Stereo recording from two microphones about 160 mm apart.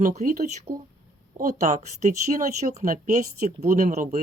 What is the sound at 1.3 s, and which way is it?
Speech, 50° right (ahead or behind).